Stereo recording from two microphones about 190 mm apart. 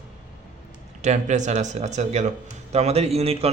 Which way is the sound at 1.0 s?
40° right (ahead or behind).